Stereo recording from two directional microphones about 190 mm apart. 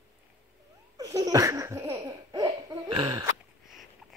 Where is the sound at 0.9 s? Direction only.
20° right (ahead or behind).